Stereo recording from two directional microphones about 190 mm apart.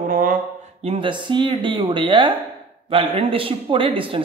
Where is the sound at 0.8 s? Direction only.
30° right (ahead or behind).